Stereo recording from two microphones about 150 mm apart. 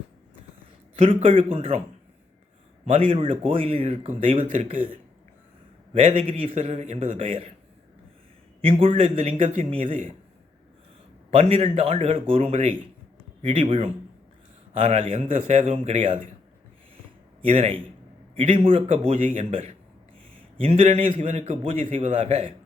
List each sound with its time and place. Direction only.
0.9 s speech: 40° right (ahead or behind)
2.8 s a man's voice: 45° right (ahead or behind)
8.6 s a man's voice: 40° right (ahead or behind)
11.3 s a man's voice: 40° right (ahead or behind)
17.4 s a man's voice: 40° right (ahead or behind)